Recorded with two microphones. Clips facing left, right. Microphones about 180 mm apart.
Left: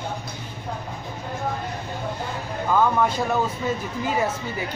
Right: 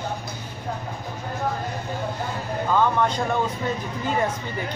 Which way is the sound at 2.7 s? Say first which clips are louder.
Left 1 dB; 5° left (ahead or behind).